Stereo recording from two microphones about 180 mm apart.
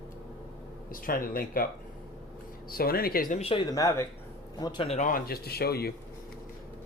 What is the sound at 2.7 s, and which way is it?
Speech, 55° left (ahead or behind).